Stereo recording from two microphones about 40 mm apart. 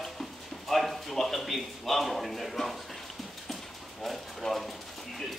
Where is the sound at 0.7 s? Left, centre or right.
Centre.